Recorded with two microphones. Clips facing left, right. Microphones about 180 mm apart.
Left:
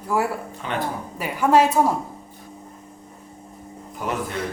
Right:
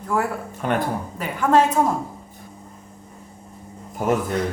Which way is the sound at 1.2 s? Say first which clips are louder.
Left 1 dB; 10° left (ahead or behind).